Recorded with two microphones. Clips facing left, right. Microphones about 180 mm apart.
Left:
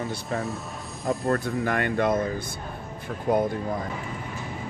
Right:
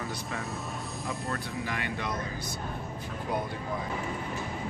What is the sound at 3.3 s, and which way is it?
Speech, 50° left (ahead or behind).